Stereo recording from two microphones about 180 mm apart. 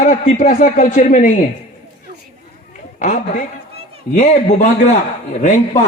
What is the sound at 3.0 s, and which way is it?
A man's voice, 45° left (ahead or behind).